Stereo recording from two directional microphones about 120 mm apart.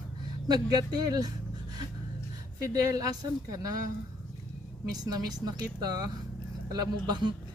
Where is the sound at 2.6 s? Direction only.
30° right (ahead or behind).